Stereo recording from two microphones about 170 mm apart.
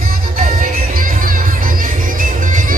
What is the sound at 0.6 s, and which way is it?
Music, 55° right (ahead or behind).